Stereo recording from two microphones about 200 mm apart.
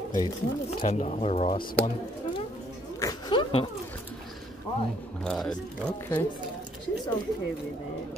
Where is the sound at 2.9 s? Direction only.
20° left (ahead or behind).